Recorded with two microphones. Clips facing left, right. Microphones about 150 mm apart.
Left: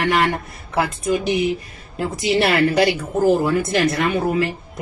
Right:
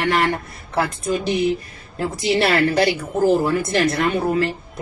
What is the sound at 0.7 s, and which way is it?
A woman's voice, 15° left (ahead or behind).